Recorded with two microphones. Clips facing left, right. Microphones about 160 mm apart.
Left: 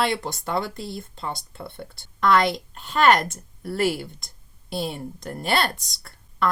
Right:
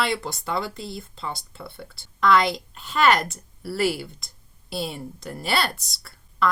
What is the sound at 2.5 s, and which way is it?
A woman's voice, centre (ahead or behind).